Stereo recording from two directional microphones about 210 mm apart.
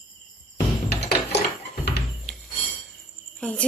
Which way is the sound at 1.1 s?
50° left (ahead or behind).